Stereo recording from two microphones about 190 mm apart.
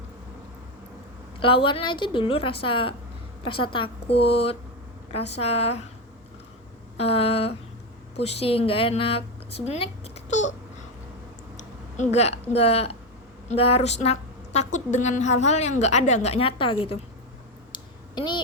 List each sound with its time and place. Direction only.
1.4 s a woman's voice: 30° left (ahead or behind)
6.9 s a woman's voice: 30° left (ahead or behind)
11.5 s a woman's voice: 35° left (ahead or behind)
17.7 s a sound: 25° left (ahead or behind)